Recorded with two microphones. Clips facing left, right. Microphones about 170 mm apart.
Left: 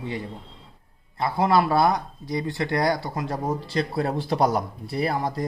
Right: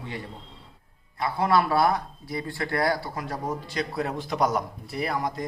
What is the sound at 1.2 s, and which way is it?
Speech, 25° left (ahead or behind).